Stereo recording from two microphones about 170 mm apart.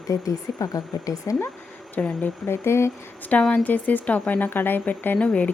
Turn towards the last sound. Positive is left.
turn(degrees=5)  # may be behind; listen again after turning